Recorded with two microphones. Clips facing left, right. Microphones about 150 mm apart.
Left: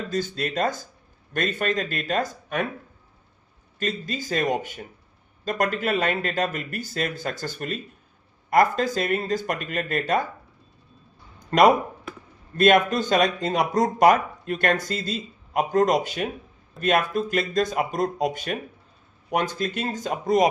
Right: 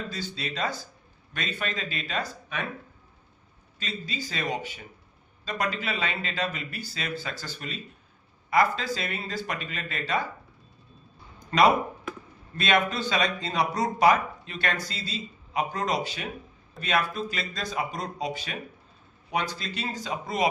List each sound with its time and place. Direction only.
0.1 s speech: 50° left (ahead or behind)
3.8 s speech: 50° left (ahead or behind)
12.5 s speech: 50° left (ahead or behind)